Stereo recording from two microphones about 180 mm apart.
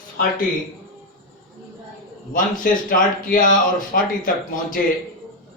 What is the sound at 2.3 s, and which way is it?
A man's voice, 50° left (ahead or behind).